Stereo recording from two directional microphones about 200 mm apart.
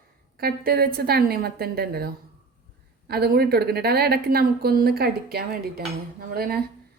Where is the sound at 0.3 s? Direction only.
50° right (ahead or behind).